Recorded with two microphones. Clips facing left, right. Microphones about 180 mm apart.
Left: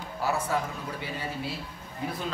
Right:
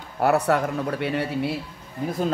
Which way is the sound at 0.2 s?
65° right (ahead or behind).